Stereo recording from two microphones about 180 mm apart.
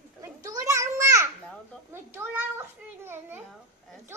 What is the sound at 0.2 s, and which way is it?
Children playing, 20° right (ahead or behind).